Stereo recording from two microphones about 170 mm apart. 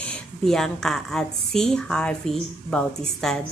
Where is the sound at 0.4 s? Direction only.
5° left (ahead or behind).